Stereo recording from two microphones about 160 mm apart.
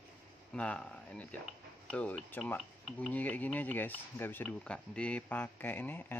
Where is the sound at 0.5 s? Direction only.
5° left (ahead or behind).